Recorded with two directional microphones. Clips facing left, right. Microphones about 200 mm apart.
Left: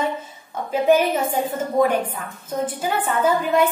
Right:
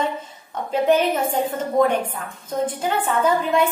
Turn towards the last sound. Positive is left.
turn(degrees=5)  # may be behind; listen again after turning